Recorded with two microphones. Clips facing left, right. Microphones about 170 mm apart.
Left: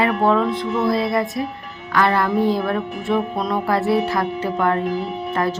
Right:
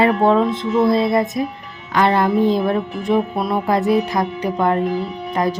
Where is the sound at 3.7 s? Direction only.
20° right (ahead or behind).